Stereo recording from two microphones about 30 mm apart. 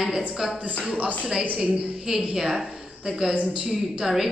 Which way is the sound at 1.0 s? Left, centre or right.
Right.